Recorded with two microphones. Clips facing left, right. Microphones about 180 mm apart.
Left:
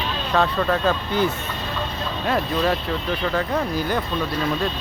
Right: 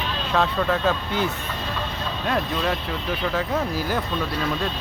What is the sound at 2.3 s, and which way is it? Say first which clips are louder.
Speech: left 3 dB; centre (ahead or behind).